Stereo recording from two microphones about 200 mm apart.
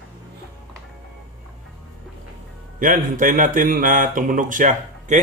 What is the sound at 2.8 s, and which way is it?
Speech, 40° right (ahead or behind).